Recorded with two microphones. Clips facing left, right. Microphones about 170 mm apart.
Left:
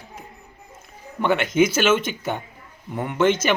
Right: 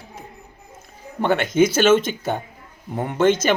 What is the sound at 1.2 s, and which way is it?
Speech, 40° right (ahead or behind).